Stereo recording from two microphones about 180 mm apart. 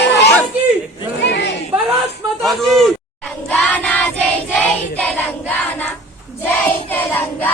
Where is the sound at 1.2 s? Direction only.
75° left (ahead or behind).